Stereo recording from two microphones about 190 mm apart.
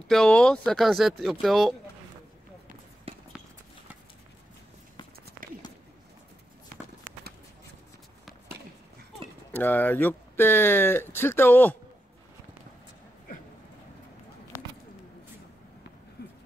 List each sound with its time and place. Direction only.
0.1 s speech: 5° left (ahead or behind)
3.1 s run: 30° right (ahead or behind)
9.5 s speech: 10° left (ahead or behind)
16.2 s a sound: 60° left (ahead or behind)